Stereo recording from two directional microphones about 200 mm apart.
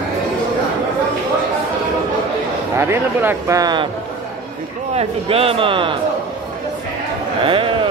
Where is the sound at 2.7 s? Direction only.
15° right (ahead or behind).